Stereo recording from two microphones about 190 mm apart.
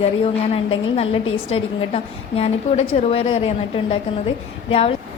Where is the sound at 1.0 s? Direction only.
90° left.